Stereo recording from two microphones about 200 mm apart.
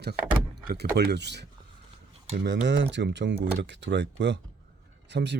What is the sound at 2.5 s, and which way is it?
Speech, 65° right (ahead or behind).